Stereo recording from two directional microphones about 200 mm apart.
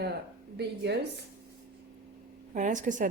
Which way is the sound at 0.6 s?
55° right (ahead or behind).